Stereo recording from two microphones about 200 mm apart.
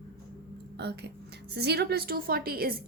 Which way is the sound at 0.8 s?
55° right (ahead or behind).